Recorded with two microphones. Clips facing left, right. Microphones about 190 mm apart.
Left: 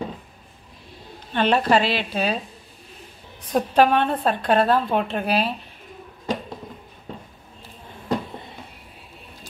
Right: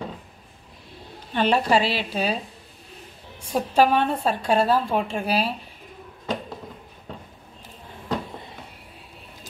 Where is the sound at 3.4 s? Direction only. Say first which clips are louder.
Left 2 dB; 10° right (ahead or behind).